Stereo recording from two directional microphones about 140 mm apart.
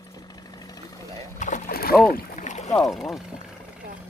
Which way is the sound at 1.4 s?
75° left (ahead or behind).